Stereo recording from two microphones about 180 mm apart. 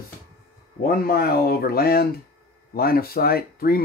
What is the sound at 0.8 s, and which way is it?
Speech, 55° left (ahead or behind).